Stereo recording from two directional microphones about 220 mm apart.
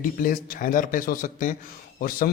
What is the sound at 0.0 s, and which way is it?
A man's voice, 40° left (ahead or behind).